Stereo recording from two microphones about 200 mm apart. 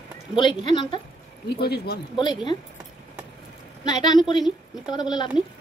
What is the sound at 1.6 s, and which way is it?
Speech, 55° left (ahead or behind).